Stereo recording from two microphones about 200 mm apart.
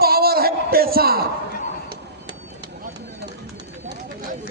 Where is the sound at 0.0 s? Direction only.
50° right (ahead or behind).